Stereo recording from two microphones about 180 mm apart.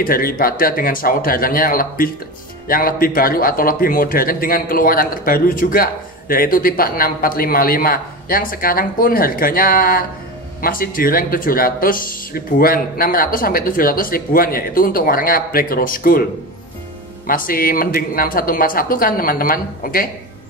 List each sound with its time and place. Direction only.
0.0 s a man's voice: 55° left (ahead or behind)
17.3 s a man's voice: 50° left (ahead or behind)